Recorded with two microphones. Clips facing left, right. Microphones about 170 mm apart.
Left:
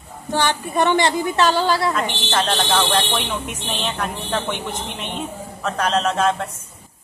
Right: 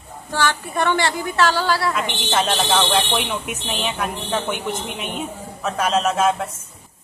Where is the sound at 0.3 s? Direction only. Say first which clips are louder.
Left 1 dB; 20° left (ahead or behind).